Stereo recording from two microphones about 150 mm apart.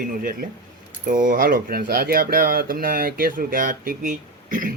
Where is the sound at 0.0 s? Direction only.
70° right (ahead or behind).